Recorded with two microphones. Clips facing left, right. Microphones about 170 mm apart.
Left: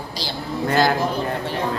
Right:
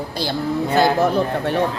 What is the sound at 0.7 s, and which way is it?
Speech, 60° right (ahead or behind).